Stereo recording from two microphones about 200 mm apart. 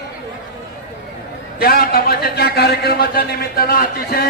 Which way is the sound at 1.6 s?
50° left (ahead or behind).